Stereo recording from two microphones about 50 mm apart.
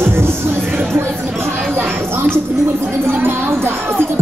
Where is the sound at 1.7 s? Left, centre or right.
Right.